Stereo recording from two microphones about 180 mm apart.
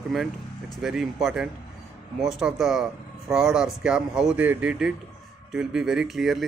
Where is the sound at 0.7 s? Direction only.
Centre (ahead or behind).